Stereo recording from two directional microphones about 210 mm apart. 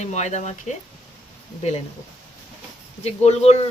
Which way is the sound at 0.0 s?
35° left (ahead or behind).